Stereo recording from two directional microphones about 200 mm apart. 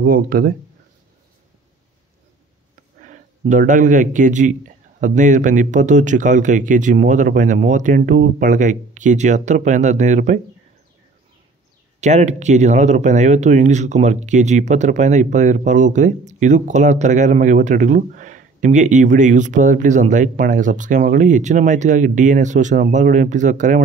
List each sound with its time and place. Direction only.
0.0 s speech: 45° right (ahead or behind)
3.0 s speech: 40° right (ahead or behind)
12.0 s speech: 35° right (ahead or behind)